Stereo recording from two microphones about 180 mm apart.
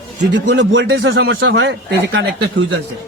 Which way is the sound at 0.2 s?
75° right (ahead or behind).